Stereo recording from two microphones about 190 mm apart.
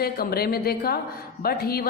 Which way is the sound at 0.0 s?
55° left (ahead or behind).